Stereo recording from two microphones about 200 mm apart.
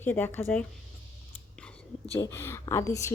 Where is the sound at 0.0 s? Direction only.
10° left (ahead or behind).